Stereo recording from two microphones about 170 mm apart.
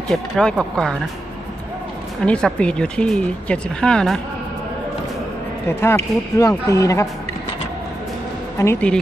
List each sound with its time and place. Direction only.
0.1 s speech: 5° left (ahead or behind)
2.2 s speech: 5° left (ahead or behind)
5.7 s speech: 15° left (ahead or behind)
8.5 s speech: 10° left (ahead or behind)